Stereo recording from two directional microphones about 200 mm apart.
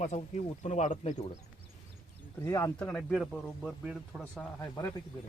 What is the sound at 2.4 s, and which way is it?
Speech, 15° left (ahead or behind).